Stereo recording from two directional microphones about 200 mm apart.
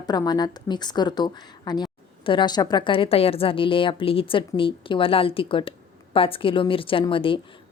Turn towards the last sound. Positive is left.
turn(degrees=25)  # may be behind; listen again after turning